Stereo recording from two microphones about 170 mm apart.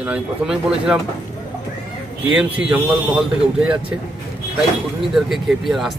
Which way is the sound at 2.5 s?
10° right (ahead or behind).